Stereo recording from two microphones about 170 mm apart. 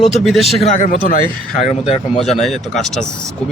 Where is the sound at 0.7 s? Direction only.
50° left (ahead or behind).